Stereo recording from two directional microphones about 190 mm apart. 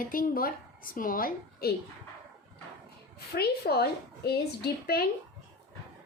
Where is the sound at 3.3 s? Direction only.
55° left (ahead or behind).